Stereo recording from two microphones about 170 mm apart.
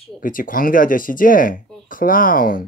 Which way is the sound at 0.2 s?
55° left (ahead or behind).